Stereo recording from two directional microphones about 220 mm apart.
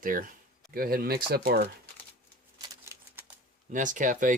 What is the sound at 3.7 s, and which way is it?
Speech, 35° right (ahead or behind).